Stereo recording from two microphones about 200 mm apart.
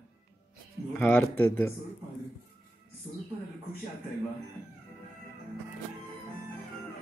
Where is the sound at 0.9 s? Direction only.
5° left (ahead or behind).